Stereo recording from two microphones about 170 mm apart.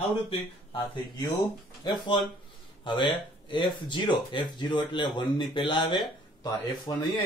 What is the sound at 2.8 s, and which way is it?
Speech, 30° left (ahead or behind).